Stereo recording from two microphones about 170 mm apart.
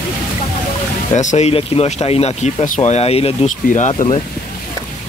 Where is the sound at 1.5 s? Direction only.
35° left (ahead or behind).